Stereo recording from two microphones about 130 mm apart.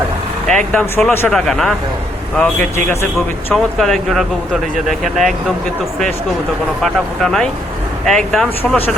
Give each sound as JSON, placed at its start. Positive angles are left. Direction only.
{"t": 0.4, "sound": "speech", "side_deg": 10}
{"t": 1.3, "sound": "speech", "side_deg": 0}
{"t": 2.7, "sound": "a man's voice", "side_deg": 20}
{"t": 3.5, "sound": "speech", "side_deg": 0}
{"t": 6.8, "sound": "speech", "side_deg": 5}